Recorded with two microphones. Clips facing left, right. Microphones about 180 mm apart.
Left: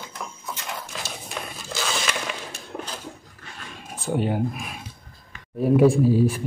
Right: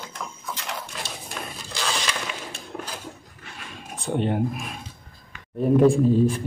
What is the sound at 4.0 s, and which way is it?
Speech, 5° left (ahead or behind).